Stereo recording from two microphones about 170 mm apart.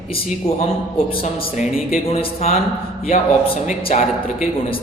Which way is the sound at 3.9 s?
45° left (ahead or behind).